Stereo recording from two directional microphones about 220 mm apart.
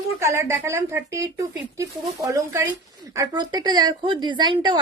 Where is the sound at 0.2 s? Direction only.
10° right (ahead or behind).